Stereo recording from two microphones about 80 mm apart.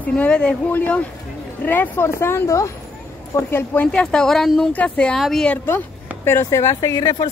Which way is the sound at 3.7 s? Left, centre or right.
Centre.